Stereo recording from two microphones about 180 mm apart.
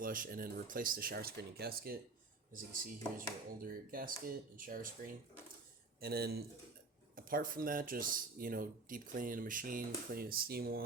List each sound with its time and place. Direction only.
0.0 s a man's voice: 50° right (ahead or behind)